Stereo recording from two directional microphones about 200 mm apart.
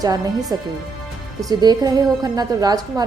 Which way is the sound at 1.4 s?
20° right (ahead or behind).